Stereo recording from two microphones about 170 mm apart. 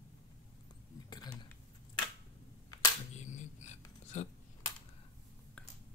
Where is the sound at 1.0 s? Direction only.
25° left (ahead or behind).